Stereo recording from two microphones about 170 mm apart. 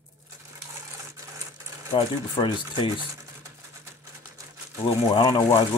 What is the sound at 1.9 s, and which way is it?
Speech, 30° left (ahead or behind).